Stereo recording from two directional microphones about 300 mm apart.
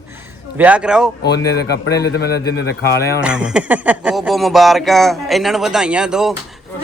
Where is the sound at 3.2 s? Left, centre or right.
Centre.